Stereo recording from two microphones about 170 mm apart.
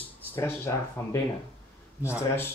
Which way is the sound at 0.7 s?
20° left (ahead or behind).